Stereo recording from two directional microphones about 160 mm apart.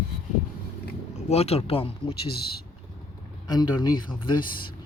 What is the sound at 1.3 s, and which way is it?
Speech, 40° left (ahead or behind).